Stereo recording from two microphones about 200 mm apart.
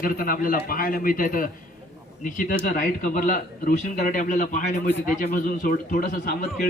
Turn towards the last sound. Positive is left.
turn(degrees=40)  # may be behind; listen again after turning